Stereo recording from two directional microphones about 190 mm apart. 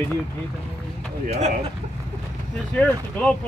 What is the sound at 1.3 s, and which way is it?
Speech, 35° right (ahead or behind).